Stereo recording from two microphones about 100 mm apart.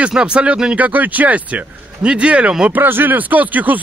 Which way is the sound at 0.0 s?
10° right (ahead or behind).